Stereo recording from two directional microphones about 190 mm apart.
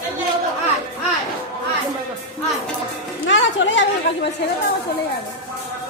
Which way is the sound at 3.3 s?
75° left (ahead or behind).